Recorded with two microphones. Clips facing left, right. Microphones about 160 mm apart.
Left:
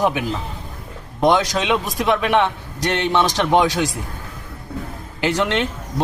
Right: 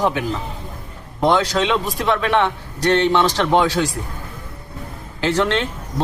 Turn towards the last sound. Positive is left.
turn(degrees=15)  # may be behind; listen again after turning